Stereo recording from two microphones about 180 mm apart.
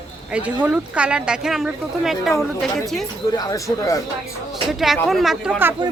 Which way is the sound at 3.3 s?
20° left (ahead or behind).